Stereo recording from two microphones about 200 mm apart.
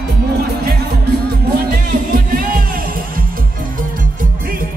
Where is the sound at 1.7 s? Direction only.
45° right (ahead or behind).